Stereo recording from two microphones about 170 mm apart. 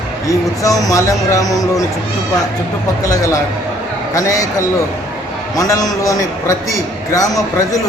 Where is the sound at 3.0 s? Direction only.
20° left (ahead or behind).